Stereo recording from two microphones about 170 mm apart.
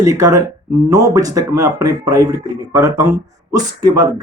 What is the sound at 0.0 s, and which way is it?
Speech, 20° right (ahead or behind).